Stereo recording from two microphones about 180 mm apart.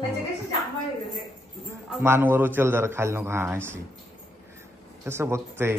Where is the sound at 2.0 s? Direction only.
10° right (ahead or behind).